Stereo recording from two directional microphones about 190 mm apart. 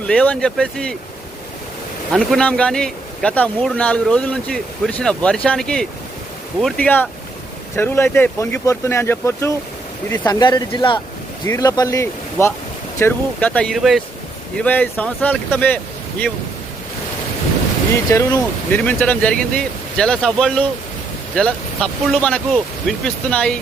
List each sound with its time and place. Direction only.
0.1 s a man's voice: 5° left (ahead or behind)
2.1 s a man's voice: 5° left (ahead or behind)
18.1 s a man's voice: 15° left (ahead or behind)